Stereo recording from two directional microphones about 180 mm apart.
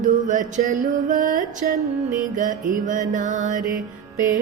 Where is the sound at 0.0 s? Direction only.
45° right (ahead or behind).